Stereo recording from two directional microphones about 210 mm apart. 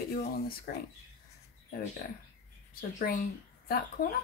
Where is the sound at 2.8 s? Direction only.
45° left (ahead or behind).